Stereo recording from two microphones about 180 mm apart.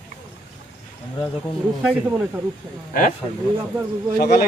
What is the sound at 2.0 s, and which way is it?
Speech, 10° right (ahead or behind).